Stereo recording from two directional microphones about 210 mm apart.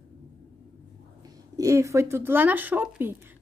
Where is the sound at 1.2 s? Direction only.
15° right (ahead or behind).